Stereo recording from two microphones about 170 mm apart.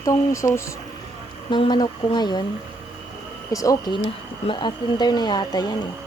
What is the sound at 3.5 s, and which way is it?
Speech, 20° left (ahead or behind).